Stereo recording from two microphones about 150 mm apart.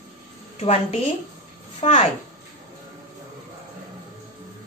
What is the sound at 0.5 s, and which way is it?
Speech, 45° left (ahead or behind).